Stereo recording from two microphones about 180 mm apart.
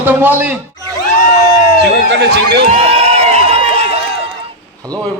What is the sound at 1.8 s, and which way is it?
Speech, 70° right (ahead or behind).